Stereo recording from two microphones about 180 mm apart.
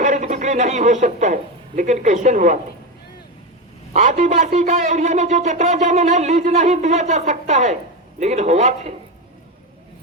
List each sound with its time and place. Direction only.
0.0 s a woman's voice: 40° right (ahead or behind)
3.9 s a man's voice: 40° right (ahead or behind)